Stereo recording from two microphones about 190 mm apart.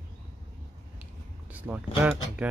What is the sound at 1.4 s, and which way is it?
Speech, 10° right (ahead or behind).